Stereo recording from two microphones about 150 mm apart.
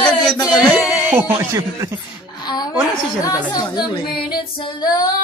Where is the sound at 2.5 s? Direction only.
25° left (ahead or behind).